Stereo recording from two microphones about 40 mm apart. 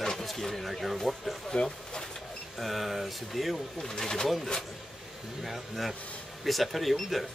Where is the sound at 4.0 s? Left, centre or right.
Centre.